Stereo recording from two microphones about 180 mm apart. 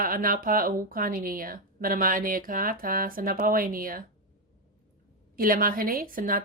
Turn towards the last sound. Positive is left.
turn(degrees=-50)  # may be behind; listen again after turning